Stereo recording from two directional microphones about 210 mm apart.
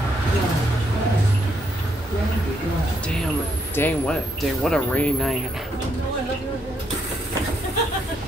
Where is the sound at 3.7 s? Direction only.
10° left (ahead or behind).